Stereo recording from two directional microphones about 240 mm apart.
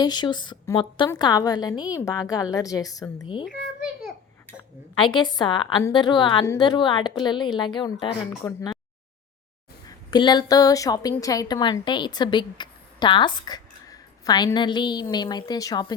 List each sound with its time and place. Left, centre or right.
0.0 s a woman's voice: centre
4.9 s a woman's voice: centre
10.1 s a woman's voice: centre